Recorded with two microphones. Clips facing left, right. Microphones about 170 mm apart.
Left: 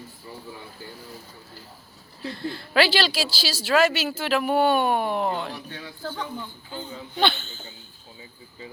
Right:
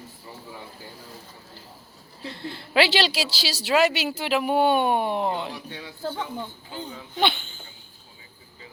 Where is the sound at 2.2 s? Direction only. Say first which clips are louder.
Left 4 dB; 20° right (ahead or behind).